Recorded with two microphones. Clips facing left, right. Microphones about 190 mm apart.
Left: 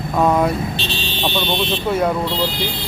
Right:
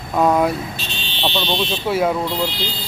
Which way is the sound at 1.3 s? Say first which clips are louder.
Left 1 dB; 15° left (ahead or behind).